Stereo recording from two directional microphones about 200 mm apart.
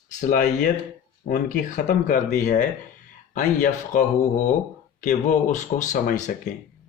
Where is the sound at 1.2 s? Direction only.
40° left (ahead or behind).